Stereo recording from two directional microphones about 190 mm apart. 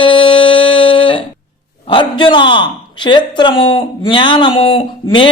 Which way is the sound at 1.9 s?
25° left (ahead or behind).